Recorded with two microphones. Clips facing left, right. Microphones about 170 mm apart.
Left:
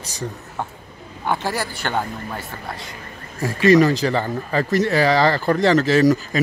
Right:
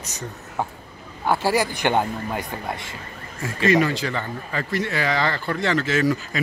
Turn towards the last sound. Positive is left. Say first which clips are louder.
# left 6 dB
turn(degrees=40)  # may be behind; listen again after turning